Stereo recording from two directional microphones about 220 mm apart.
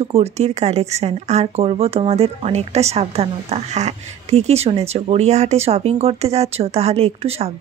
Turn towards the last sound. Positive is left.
turn(degrees=-30)  # may be behind; listen again after turning